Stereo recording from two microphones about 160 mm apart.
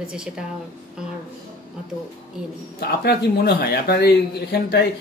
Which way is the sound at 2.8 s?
80° left.